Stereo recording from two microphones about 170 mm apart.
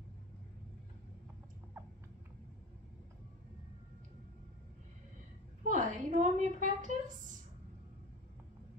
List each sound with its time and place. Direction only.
5.7 s a woman's voice: 50° right (ahead or behind)